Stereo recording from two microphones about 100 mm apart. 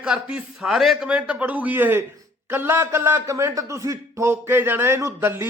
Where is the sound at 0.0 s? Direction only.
10° right (ahead or behind).